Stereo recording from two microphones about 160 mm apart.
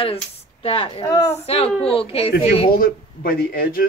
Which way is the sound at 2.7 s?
65° left (ahead or behind).